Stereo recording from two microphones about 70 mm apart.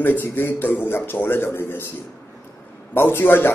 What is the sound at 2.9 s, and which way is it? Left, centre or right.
Speech, left.